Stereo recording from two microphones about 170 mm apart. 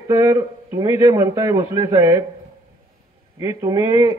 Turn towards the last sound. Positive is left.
turn(degrees=-20)  # may be behind; listen again after turning